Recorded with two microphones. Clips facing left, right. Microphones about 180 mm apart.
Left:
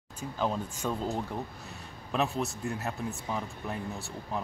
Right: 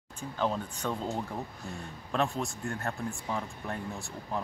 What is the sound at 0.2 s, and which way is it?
Speech, 10° left (ahead or behind).